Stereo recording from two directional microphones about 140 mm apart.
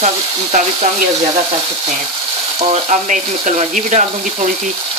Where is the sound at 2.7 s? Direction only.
55° right (ahead or behind).